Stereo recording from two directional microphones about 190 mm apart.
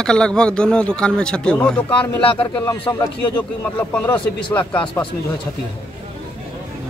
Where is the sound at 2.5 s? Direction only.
25° left (ahead or behind).